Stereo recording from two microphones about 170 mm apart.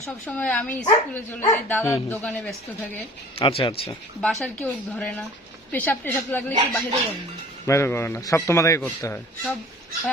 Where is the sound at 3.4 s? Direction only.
30° left (ahead or behind).